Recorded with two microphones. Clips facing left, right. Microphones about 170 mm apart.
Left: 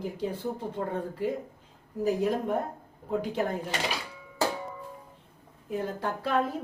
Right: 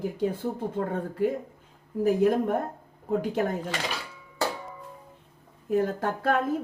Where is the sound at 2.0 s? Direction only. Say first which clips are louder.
Right 5 dB; 50° right (ahead or behind).